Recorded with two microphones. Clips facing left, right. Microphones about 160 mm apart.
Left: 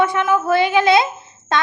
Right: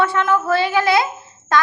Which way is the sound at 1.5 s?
25° left (ahead or behind).